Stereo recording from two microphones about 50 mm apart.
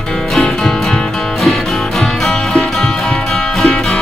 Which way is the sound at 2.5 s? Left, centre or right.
Centre.